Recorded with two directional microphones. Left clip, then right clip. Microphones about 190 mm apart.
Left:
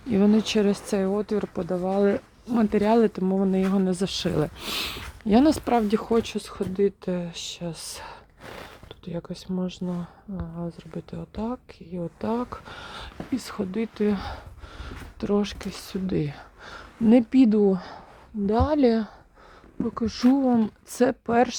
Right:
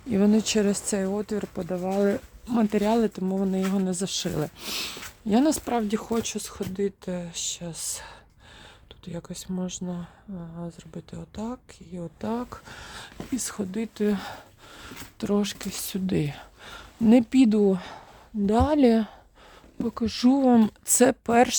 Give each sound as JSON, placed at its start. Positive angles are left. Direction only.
{"t": 0.1, "sound": "speech", "side_deg": -20}
{"t": 20.4, "sound": "speech", "side_deg": -45}
{"t": 20.8, "sound": "speech", "side_deg": -35}